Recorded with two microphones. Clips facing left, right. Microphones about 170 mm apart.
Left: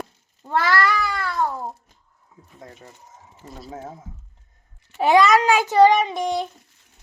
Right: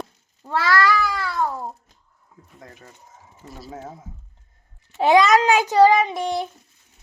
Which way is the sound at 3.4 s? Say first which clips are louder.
Left 1 dB; 20° left (ahead or behind).